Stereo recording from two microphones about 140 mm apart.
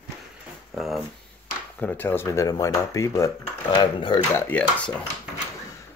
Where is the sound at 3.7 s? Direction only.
35° left (ahead or behind).